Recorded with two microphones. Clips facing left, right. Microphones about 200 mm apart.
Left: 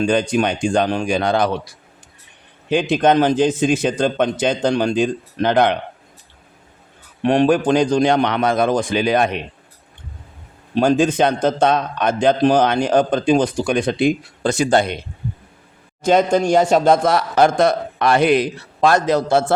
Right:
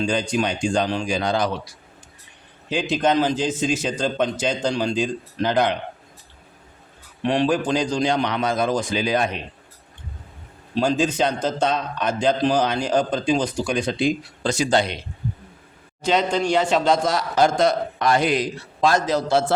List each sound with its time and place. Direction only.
0.0 s a man's voice: 55° left (ahead or behind)
2.9 s a man's voice: 55° left (ahead or behind)
7.2 s a man's voice: 50° left (ahead or behind)
10.8 s a man's voice: 55° left (ahead or behind)
16.0 s a man's voice: 45° left (ahead or behind)